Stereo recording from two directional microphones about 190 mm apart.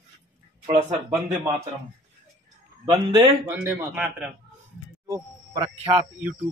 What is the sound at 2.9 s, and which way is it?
Speech, 20° right (ahead or behind).